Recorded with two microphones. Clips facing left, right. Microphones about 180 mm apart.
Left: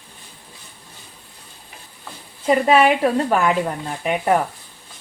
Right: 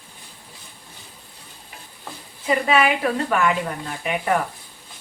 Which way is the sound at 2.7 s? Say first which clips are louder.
Left 4 dB; 35° left (ahead or behind).